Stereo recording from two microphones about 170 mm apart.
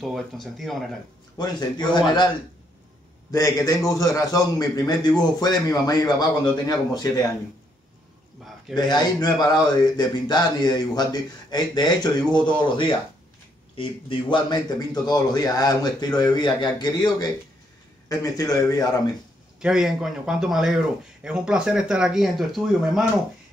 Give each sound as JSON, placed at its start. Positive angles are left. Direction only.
{"t": 0.0, "sound": "a man's voice", "side_deg": 0}
{"t": 1.4, "sound": "speech", "side_deg": 25}
{"t": 8.7, "sound": "speech", "side_deg": 25}
{"t": 19.6, "sound": "a man's voice", "side_deg": -5}